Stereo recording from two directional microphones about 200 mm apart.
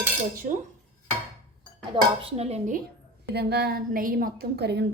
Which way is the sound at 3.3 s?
55° right (ahead or behind).